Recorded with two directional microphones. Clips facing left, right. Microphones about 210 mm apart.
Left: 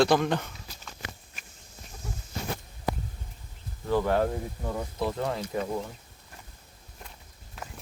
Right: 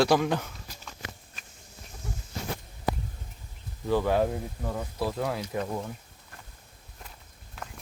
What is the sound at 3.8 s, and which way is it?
Speech, 10° right (ahead or behind).